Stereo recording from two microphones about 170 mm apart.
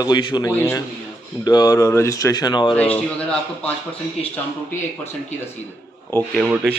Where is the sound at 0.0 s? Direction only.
25° left (ahead or behind).